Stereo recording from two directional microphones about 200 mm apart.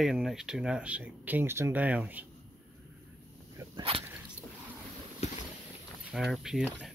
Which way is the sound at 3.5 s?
25° right (ahead or behind).